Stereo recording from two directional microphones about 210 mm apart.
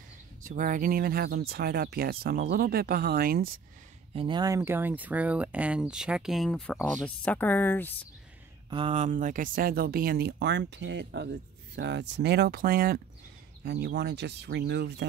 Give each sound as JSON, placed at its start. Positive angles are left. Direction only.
{"t": 0.4, "sound": "speech", "side_deg": -40}
{"t": 4.1, "sound": "speech", "side_deg": -25}
{"t": 4.6, "sound": "speech", "side_deg": -10}
{"t": 8.6, "sound": "speech", "side_deg": -25}